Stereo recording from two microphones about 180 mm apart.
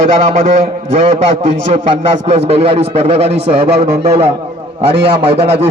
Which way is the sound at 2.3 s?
35° right (ahead or behind).